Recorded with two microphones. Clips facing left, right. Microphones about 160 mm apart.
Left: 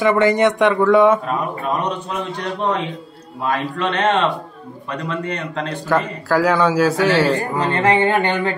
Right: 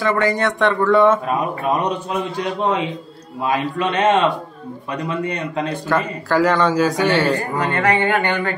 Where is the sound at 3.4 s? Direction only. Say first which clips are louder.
Right 1 dB; 10° right (ahead or behind).